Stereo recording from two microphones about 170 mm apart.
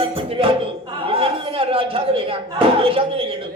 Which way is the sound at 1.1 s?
30° right (ahead or behind).